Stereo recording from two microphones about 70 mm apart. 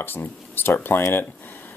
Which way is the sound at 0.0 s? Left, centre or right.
Left.